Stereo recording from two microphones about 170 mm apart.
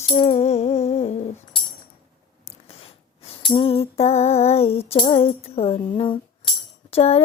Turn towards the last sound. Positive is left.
turn(degrees=35)  # may be behind; listen again after turning